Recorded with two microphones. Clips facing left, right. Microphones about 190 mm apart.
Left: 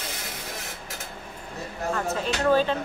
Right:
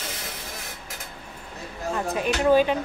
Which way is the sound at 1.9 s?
15° right (ahead or behind).